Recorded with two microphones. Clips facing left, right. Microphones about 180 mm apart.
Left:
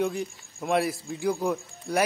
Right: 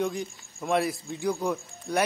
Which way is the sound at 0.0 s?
Centre (ahead or behind).